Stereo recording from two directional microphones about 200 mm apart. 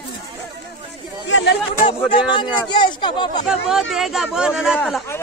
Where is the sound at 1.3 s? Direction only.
60° left (ahead or behind).